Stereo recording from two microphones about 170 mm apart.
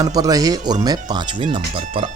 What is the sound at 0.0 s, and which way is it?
Speech, 20° right (ahead or behind).